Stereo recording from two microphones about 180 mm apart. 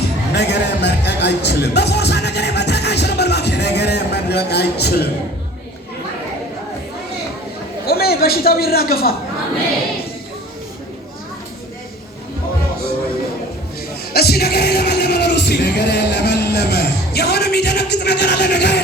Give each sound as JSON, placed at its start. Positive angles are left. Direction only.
{"t": 0.3, "sound": "speech", "side_deg": 70}
{"t": 7.9, "sound": "a man's voice", "side_deg": 60}
{"t": 14.1, "sound": "music", "side_deg": 60}